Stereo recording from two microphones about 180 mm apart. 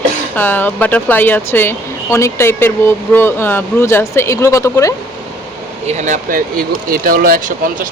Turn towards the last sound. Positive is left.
turn(degrees=-50)  # may be behind; listen again after turning